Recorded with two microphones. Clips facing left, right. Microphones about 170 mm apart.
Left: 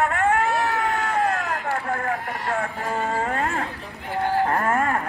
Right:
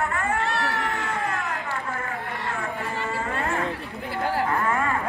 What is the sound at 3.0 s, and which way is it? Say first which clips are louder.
Livestock: left 4 dB; 65° left (ahead or behind).